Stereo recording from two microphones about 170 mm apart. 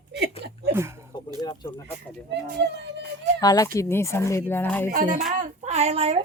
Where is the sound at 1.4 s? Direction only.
25° left (ahead or behind).